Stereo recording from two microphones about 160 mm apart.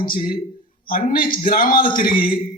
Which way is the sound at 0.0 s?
65° left (ahead or behind).